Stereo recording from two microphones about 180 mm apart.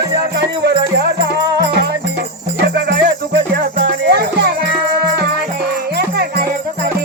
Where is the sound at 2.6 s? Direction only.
65° right (ahead or behind).